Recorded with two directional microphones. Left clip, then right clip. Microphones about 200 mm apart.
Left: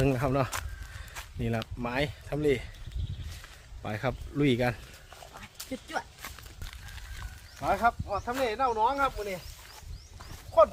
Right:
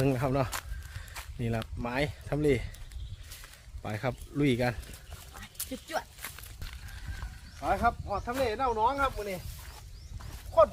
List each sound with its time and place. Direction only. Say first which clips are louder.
0.0 s speech: left 1 dB; centre (ahead or behind)
3.8 s speech: left 2 dB; 5° left (ahead or behind)
5.5 s speech: even; 40° right (ahead or behind)
7.6 s speech: left 2 dB; 25° left (ahead or behind)
10.2 s a sound: left 1 dB; 5° left (ahead or behind)